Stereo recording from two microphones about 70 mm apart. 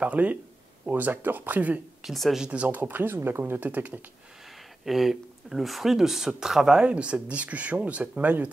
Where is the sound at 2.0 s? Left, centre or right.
Centre.